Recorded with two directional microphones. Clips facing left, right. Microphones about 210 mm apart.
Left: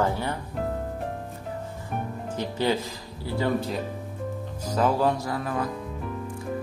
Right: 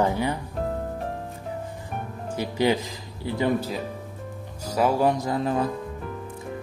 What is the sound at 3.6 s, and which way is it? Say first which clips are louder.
Speech: even; centre (ahead or behind).